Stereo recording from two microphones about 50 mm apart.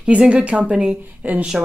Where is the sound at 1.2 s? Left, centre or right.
Right.